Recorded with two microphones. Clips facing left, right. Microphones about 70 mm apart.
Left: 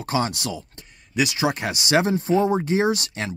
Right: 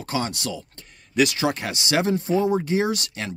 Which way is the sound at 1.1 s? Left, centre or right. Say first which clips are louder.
Right 1 dB; centre.